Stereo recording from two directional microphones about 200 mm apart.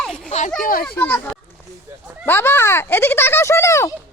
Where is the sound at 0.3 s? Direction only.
35° left (ahead or behind).